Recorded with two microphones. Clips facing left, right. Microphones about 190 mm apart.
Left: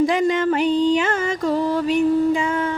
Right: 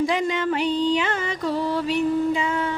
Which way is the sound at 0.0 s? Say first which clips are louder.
Left 5 dB; 50° left (ahead or behind).